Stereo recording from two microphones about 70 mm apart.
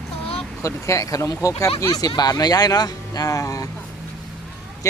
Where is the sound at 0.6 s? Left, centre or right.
Left.